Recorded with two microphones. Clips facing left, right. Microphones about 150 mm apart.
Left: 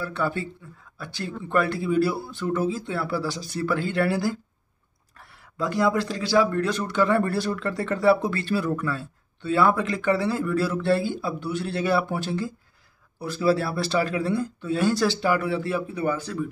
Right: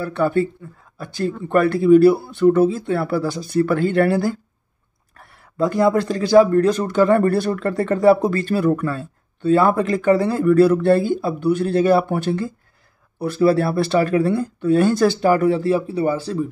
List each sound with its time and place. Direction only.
0.0 s a man's voice: 50° right (ahead or behind); by 16.4 s 30° right (ahead or behind)